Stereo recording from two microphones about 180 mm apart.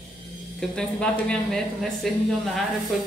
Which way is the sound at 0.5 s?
5° left (ahead or behind).